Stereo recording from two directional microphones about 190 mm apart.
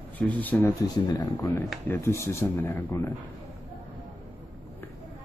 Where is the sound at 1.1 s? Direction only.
20° left (ahead or behind).